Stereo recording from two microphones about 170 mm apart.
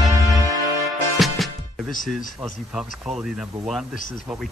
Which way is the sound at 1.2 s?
Centre (ahead or behind).